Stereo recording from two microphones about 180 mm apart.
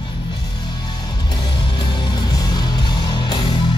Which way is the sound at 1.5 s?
25° left (ahead or behind).